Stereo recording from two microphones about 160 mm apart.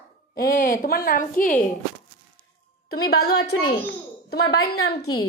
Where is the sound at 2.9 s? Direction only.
85° left.